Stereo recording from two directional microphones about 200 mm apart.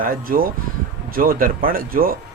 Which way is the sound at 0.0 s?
45° right (ahead or behind).